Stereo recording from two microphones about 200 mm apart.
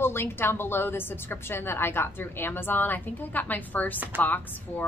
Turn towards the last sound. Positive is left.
turn(degrees=10)  # may be behind; listen again after turning